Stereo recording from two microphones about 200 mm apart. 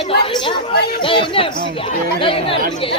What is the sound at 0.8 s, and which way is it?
Speech, 50° left (ahead or behind).